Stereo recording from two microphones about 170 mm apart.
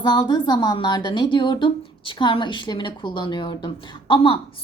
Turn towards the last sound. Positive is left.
turn(degrees=30)  # may be behind; listen again after turning